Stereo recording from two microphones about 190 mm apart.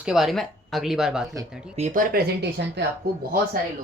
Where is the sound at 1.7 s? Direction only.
40° right (ahead or behind); by 3.3 s 60° right (ahead or behind).